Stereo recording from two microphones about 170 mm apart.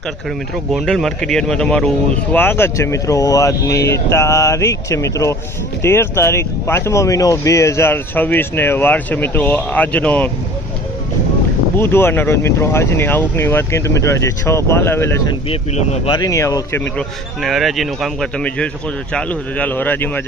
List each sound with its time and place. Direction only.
0.7 s speech: centre (ahead or behind)
11.8 s speech: 15° left (ahead or behind)
15.4 s speech: 40° left (ahead or behind)
16.1 s speech: 20° left (ahead or behind)
17.4 s speech: centre (ahead or behind)